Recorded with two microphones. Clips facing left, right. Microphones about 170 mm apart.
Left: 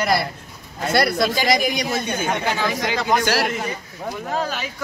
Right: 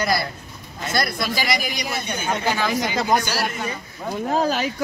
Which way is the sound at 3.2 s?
90° left.